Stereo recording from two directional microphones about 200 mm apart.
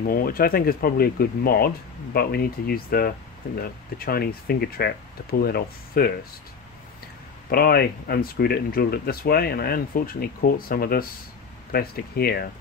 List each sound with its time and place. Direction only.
0.0 s speech: 45° left (ahead or behind)
7.4 s speech: 50° left (ahead or behind)